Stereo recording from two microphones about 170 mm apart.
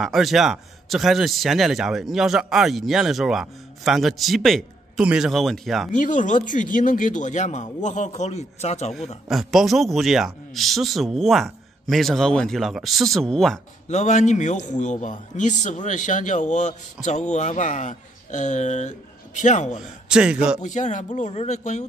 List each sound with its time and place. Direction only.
0.0 s speech: centre (ahead or behind)
5.9 s a man's voice: 50° left (ahead or behind)
9.3 s speech: centre (ahead or behind)
13.8 s a man's voice: 45° left (ahead or behind)
20.1 s speech: 5° right (ahead or behind)
20.6 s a man's voice: 45° left (ahead or behind)